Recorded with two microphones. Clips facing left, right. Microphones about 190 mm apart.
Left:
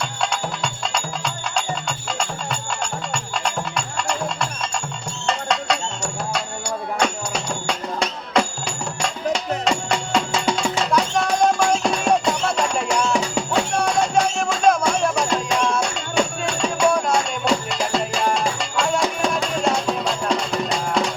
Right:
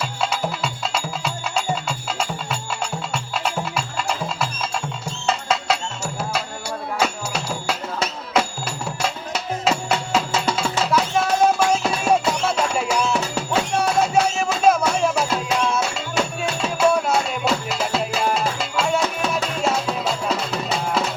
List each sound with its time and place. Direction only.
0.2 s music: 5° right (ahead or behind)